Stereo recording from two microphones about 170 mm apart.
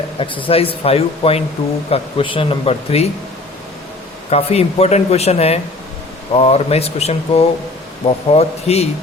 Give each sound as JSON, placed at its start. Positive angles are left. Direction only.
{"t": 0.2, "sound": "speech", "side_deg": 30}
{"t": 4.3, "sound": "speech", "side_deg": 35}